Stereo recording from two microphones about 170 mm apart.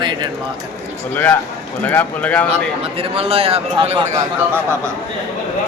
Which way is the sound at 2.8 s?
35° right (ahead or behind).